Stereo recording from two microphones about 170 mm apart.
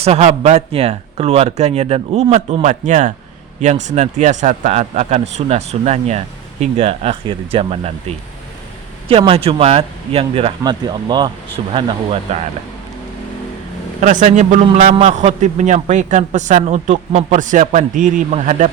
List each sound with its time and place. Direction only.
0.0 s a man's voice: 40° right (ahead or behind)
14.0 s a man's voice: 45° right (ahead or behind)